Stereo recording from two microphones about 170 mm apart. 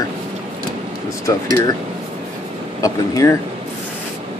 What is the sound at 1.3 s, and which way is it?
Speech, 15° left (ahead or behind).